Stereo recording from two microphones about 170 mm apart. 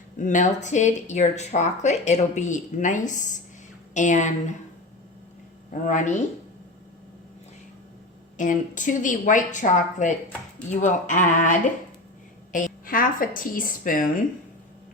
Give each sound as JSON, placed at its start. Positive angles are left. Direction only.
{"t": 0.2, "sound": "speech", "side_deg": 45}
{"t": 5.8, "sound": "speech", "side_deg": 45}
{"t": 8.4, "sound": "a woman's voice", "side_deg": 50}